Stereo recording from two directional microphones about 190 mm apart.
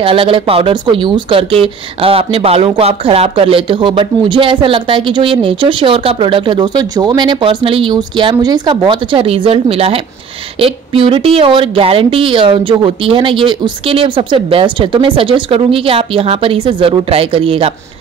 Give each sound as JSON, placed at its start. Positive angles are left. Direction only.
{"t": 0.0, "sound": "speech", "side_deg": -30}